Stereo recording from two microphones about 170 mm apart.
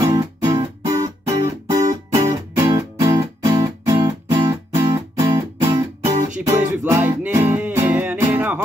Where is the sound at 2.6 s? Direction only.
20° right (ahead or behind).